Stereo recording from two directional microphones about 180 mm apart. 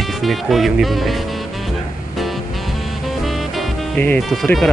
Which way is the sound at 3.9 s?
10° left (ahead or behind).